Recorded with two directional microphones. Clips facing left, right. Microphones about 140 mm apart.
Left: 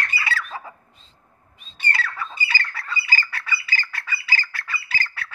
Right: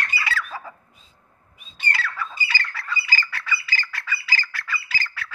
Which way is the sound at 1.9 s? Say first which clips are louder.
Even; 25° left (ahead or behind).